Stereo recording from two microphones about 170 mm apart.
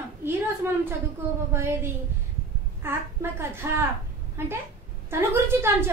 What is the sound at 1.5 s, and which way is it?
A woman's voice, 15° right (ahead or behind).